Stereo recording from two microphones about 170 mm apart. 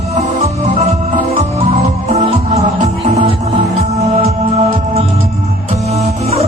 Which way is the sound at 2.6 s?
40° right (ahead or behind).